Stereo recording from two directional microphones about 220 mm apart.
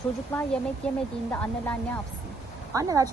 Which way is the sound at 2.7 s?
15° right (ahead or behind).